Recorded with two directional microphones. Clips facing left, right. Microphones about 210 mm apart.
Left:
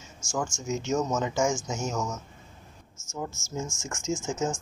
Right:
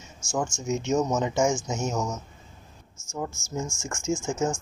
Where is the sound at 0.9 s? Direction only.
15° right (ahead or behind).